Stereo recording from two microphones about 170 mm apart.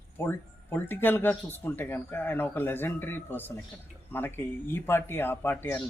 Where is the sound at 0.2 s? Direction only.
10° left (ahead or behind).